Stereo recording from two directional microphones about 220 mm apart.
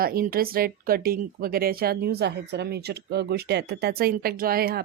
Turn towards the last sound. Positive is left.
turn(degrees=-45)  # may be behind; listen again after turning